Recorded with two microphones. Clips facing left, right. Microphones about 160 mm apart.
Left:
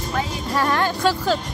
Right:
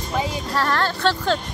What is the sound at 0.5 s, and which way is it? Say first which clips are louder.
Speech: left 2 dB; 15° left (ahead or behind).